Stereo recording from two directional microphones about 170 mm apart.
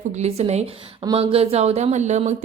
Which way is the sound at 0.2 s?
40° right (ahead or behind).